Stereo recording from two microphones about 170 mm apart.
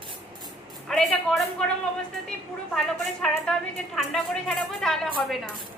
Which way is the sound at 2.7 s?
5° left (ahead or behind).